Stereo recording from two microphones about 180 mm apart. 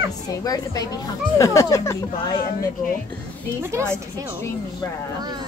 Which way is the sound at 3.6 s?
15° right (ahead or behind).